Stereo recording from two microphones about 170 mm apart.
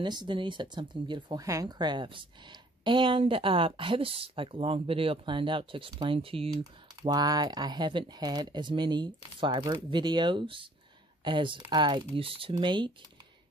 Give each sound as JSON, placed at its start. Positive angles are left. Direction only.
{"t": 0.0, "sound": "speech", "side_deg": -25}
{"t": 6.6, "sound": "speech", "side_deg": -20}